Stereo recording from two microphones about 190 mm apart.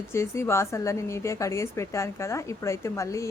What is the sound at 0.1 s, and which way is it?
A woman's voice, 15° left (ahead or behind).